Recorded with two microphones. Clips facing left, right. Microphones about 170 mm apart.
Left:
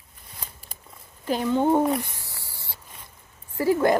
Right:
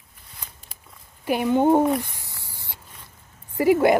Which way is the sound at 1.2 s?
15° right (ahead or behind).